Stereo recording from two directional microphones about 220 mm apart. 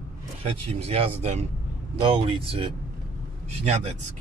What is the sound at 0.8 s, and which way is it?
Speech, 25° right (ahead or behind).